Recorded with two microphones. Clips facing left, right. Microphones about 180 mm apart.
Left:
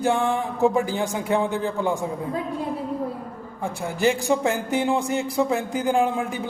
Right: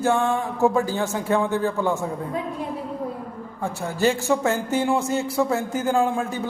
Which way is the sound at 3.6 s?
15° left (ahead or behind).